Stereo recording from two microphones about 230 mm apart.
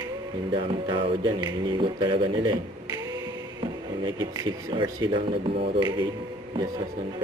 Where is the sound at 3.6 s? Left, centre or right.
Centre.